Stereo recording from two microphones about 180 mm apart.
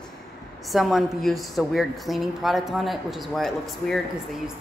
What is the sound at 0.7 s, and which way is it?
A woman's voice, centre (ahead or behind).